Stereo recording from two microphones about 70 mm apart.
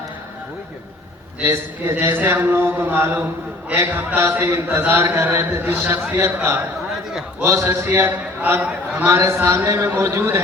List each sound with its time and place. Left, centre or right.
1.5 s a man's voice: right
7.1 s a man's voice: centre
7.4 s a man's voice: right